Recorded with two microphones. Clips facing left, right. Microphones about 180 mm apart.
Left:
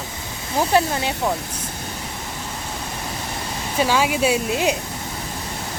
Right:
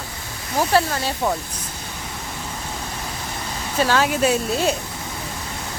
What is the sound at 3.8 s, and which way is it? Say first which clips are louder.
Speech: even; 10° left (ahead or behind).